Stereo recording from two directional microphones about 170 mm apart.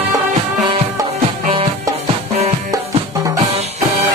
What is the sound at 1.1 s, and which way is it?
Music, 35° right (ahead or behind).